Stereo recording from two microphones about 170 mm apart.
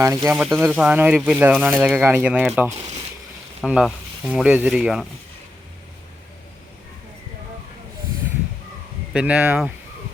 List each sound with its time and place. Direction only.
0.0 s speech: 20° right (ahead or behind)
0.3 s speech: centre (ahead or behind)
9.1 s speech: 10° right (ahead or behind)